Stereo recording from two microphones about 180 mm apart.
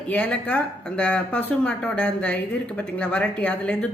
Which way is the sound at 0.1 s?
5° left (ahead or behind).